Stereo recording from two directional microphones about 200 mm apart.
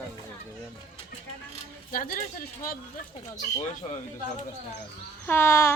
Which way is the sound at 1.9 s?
45° left (ahead or behind).